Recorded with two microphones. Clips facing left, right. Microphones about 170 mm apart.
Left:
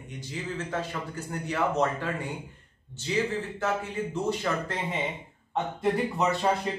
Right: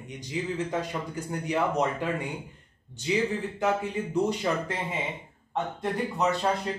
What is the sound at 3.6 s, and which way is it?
Speech, 15° right (ahead or behind).